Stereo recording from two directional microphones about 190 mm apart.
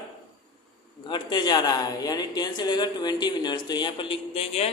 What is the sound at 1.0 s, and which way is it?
A man's voice, 25° left (ahead or behind).